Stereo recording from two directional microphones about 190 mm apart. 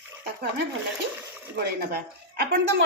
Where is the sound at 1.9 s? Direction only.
55° right (ahead or behind).